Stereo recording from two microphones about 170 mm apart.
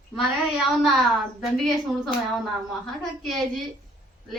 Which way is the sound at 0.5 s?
Centre (ahead or behind).